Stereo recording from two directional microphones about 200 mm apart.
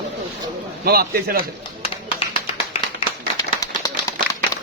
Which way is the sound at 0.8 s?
50° right (ahead or behind).